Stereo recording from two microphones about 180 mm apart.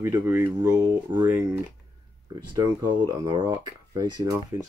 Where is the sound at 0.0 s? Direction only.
15° right (ahead or behind).